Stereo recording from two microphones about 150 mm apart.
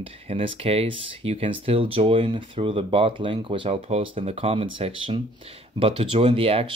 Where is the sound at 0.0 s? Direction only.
35° right (ahead or behind).